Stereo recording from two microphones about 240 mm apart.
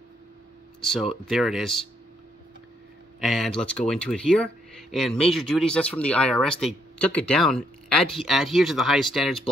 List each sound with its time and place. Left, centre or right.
0.7 s speech: centre
3.2 s speech: centre